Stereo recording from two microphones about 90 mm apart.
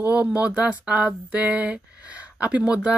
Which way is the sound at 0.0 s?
20° right (ahead or behind).